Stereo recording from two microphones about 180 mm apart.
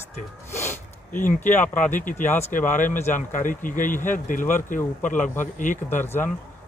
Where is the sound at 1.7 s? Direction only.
45° left (ahead or behind).